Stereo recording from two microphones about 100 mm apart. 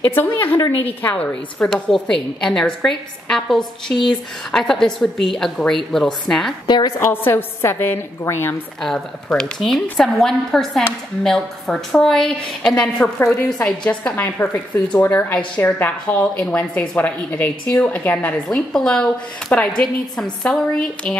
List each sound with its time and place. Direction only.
0.1 s a woman's voice: 20° left (ahead or behind)
7.0 s a woman's voice: 25° left (ahead or behind)
8.8 s a woman's voice: 5° left (ahead or behind)
18.7 s a woman's voice: 5° left (ahead or behind)